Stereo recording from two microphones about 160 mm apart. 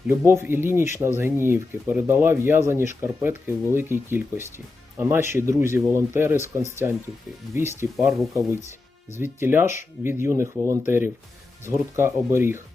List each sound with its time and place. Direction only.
0.3 s speech: 15° right (ahead or behind)